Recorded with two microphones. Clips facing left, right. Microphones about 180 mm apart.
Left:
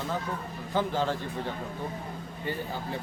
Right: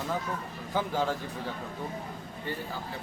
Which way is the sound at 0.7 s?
10° right (ahead or behind).